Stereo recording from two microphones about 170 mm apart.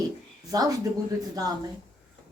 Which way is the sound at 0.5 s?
20° right (ahead or behind).